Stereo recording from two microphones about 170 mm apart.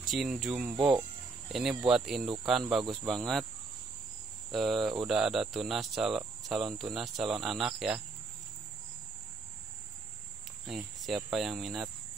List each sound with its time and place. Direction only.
0.1 s speech: centre (ahead or behind)
0.7 s speech: 30° right (ahead or behind)
1.5 s speech: centre (ahead or behind)
2.8 s speech: 25° right (ahead or behind)
3.1 s speech: centre (ahead or behind)
4.5 s speech: centre (ahead or behind)
10.7 s speech: centre (ahead or behind)